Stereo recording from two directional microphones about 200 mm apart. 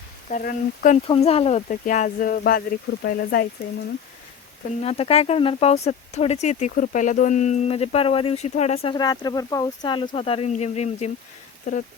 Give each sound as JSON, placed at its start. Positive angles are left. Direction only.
{"t": 0.3, "sound": "speech", "side_deg": 45}
{"t": 1.0, "sound": "speech", "side_deg": 30}
{"t": 4.8, "sound": "speech", "side_deg": 30}